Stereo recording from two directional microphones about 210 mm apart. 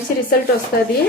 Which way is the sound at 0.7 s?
45° left (ahead or behind).